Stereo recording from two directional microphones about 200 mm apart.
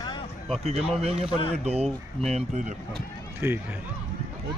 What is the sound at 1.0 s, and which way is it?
Speech, 30° right (ahead or behind).